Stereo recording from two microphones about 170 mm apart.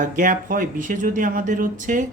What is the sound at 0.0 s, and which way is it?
Speech, 50° right (ahead or behind).